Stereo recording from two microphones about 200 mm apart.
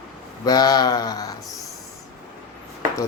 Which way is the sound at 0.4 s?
20° left (ahead or behind).